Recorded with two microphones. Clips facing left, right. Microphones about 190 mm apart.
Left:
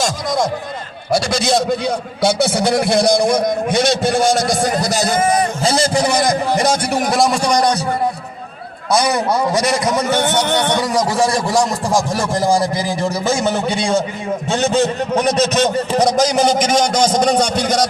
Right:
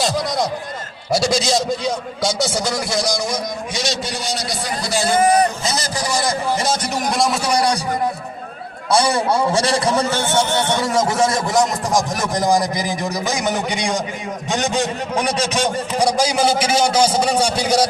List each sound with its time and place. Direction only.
0.0 s a man's voice: 50° left (ahead or behind)
5.6 s a man's voice: 30° left (ahead or behind)
7.1 s a man's voice: centre (ahead or behind)
8.9 s a man's voice: 30° right (ahead or behind)
10.1 s a man's voice: 60° left (ahead or behind)
10.8 s a man's voice: 25° right (ahead or behind); by 17.8 s 10° right (ahead or behind)